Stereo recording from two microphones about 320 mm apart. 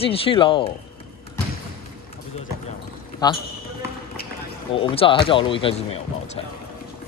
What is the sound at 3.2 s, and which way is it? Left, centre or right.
Speech, centre.